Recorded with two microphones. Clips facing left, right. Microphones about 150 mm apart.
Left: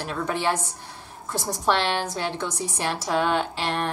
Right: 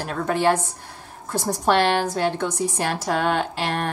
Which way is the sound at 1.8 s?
45° right (ahead or behind).